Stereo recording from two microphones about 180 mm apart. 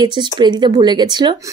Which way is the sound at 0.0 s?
25° right (ahead or behind).